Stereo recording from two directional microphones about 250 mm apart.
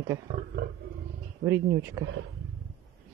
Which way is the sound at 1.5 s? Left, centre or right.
Centre.